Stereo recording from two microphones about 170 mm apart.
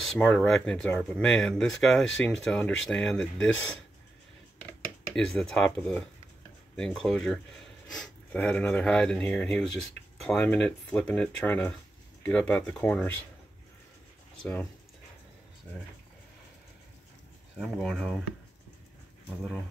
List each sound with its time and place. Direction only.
0.0 s speech: 5° left (ahead or behind)
5.1 s speech: 5° left (ahead or behind)
14.4 s speech: 10° left (ahead or behind)
17.6 s speech: centre (ahead or behind)